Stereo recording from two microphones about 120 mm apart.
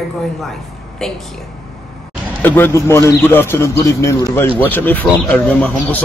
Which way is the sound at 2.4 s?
20° left (ahead or behind).